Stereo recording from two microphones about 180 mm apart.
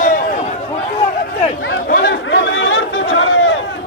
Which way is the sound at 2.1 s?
90° left.